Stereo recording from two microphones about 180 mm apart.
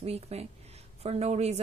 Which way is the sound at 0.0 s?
35° right (ahead or behind).